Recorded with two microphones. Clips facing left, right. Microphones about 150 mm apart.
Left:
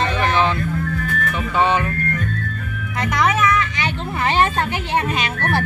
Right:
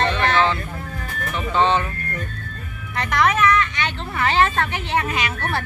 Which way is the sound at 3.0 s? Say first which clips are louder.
Even; 15° left (ahead or behind).